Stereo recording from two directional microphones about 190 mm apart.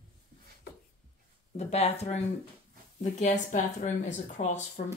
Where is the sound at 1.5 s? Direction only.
35° left (ahead or behind).